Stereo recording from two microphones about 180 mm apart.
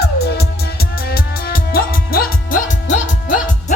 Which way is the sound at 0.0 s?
60° left (ahead or behind).